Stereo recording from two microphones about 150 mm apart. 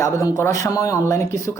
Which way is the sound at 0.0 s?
20° left (ahead or behind).